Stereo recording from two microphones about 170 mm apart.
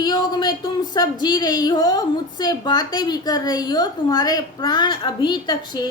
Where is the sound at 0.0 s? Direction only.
25° left (ahead or behind).